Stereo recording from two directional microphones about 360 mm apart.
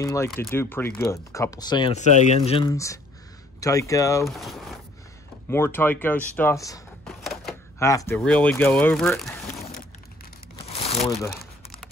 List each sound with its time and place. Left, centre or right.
0.0 s speech: centre
10.5 s crumpling: centre
11.0 s speech: centre